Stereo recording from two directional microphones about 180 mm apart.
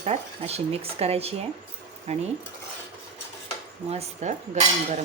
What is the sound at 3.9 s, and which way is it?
Speech, 40° right (ahead or behind).